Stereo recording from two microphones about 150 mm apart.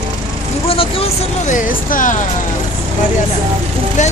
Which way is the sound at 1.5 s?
60° left (ahead or behind).